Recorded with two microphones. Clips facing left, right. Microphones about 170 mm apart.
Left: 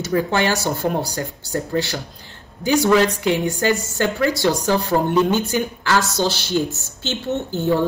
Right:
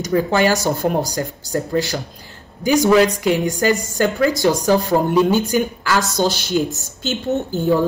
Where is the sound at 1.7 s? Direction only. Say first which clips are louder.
Right 2 dB; 40° right (ahead or behind).